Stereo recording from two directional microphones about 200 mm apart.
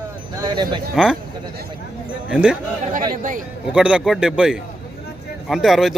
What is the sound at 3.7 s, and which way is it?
Speech, 5° right (ahead or behind).